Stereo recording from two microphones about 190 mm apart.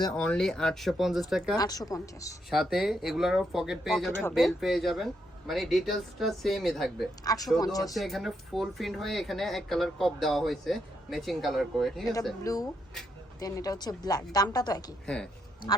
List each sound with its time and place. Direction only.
0.1 s speech: 5° left (ahead or behind)
1.5 s a woman's voice: 20° left (ahead or behind)
2.5 s speech: centre (ahead or behind)
4.1 s speech: 10° left (ahead or behind)
4.4 s speech: centre (ahead or behind)
7.3 s a woman's voice: 20° left (ahead or behind)
7.9 s speech: centre (ahead or behind)
12.4 s a woman's voice: 20° left (ahead or behind)
15.0 s speech: 5° left (ahead or behind)